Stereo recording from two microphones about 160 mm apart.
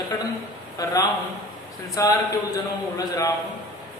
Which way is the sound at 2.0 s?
20° left (ahead or behind).